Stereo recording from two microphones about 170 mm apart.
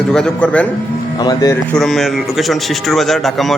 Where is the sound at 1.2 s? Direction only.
20° left (ahead or behind).